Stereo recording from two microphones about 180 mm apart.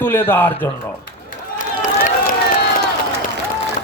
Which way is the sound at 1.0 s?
50° left (ahead or behind).